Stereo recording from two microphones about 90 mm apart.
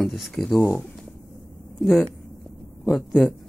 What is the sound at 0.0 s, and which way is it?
Speech, centre (ahead or behind).